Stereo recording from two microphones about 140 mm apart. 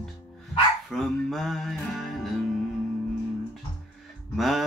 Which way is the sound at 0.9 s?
Centre (ahead or behind).